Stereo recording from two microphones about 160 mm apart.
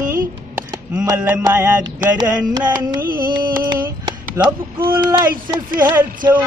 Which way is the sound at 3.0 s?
65° right (ahead or behind).